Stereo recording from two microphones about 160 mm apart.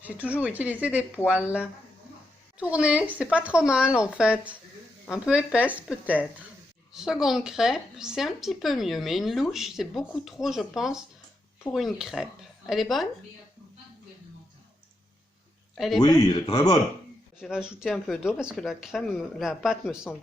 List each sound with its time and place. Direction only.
0.0 s a woman's voice: 10° right (ahead or behind)
2.6 s a woman's voice: 10° right (ahead or behind)
6.9 s a woman's voice: centre (ahead or behind)
15.7 s a man's voice: centre (ahead or behind)
16.0 s speech: 25° left (ahead or behind)
17.4 s a woman's voice: 5° right (ahead or behind)